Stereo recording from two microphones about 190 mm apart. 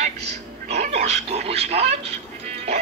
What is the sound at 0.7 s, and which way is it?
Speech, 35° right (ahead or behind).